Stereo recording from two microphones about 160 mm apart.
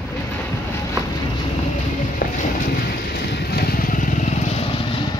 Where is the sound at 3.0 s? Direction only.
85° left; by 4.6 s 50° left (ahead or behind).